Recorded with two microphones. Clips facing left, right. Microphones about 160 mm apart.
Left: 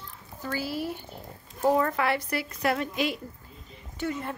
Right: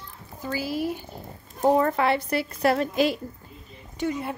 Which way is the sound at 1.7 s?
30° right (ahead or behind).